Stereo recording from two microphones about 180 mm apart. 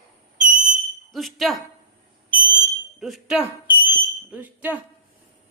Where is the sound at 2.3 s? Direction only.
10° right (ahead or behind).